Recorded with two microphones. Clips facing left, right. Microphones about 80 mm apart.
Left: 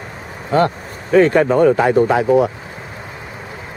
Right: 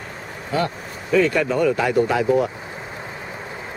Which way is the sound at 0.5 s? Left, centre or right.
Left.